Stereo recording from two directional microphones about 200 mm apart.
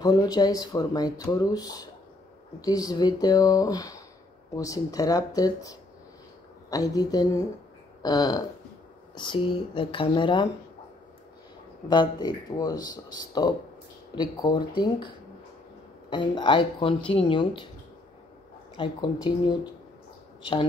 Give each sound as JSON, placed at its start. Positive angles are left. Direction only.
{"t": 0.0, "sound": "speech", "side_deg": 20}
{"t": 11.9, "sound": "speech", "side_deg": 20}
{"t": 18.8, "sound": "speech", "side_deg": 20}